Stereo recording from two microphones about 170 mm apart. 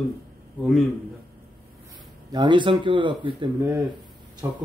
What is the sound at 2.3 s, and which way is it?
Speech, 25° right (ahead or behind).